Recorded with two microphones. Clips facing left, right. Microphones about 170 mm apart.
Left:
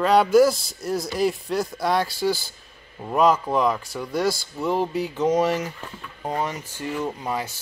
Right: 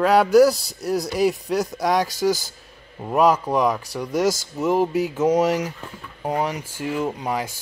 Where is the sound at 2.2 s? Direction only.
40° right (ahead or behind).